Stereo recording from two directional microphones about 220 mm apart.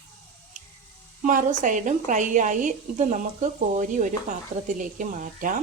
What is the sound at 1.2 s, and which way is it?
A woman's voice, 35° right (ahead or behind).